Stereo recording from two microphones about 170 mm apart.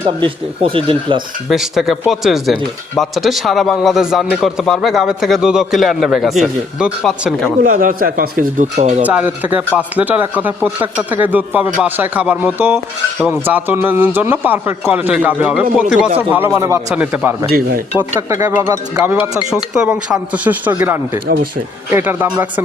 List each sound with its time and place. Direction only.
0.0 s speech: 30° right (ahead or behind)
1.5 s a man's voice: centre (ahead or behind)
7.6 s speech: 55° right (ahead or behind)
9.0 s a man's voice: 10° right (ahead or behind)